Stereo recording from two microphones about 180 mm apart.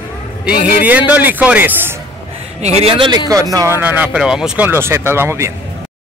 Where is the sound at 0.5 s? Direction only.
50° left (ahead or behind).